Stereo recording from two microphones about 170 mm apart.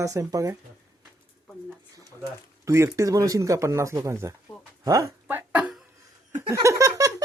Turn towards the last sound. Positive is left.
turn(degrees=-20)  # may be behind; listen again after turning